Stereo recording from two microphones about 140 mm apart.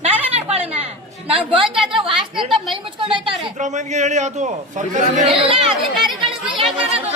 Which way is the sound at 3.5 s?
60° right (ahead or behind).